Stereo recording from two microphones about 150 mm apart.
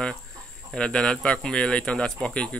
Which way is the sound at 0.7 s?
5° left (ahead or behind).